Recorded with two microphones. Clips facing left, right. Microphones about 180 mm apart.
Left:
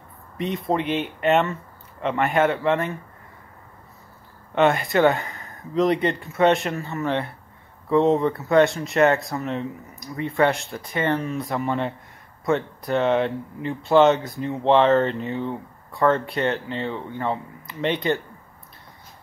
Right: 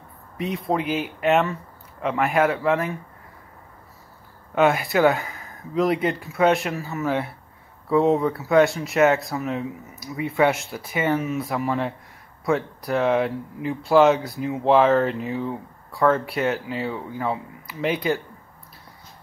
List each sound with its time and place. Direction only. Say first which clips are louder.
0.4 s speech: left 1 dB; centre (ahead or behind)
4.6 s speech: even; centre (ahead or behind)